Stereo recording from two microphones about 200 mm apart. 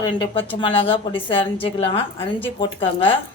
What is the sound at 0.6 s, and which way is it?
Speech, 25° left (ahead or behind).